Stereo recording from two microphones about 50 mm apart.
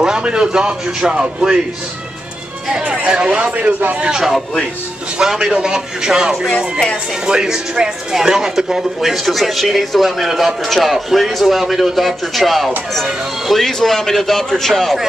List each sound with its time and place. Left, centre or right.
0.0 s a man's voice: centre
2.7 s a man's voice: right
4.1 s a man's voice: centre